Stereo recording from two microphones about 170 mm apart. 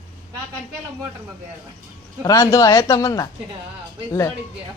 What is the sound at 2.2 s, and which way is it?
Speech, 20° left (ahead or behind).